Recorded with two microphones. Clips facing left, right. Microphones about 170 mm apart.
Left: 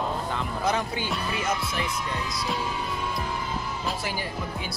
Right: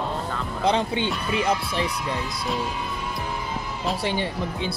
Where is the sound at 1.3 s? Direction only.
30° right (ahead or behind).